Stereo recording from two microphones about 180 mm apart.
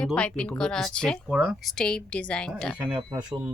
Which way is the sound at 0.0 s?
5° left (ahead or behind).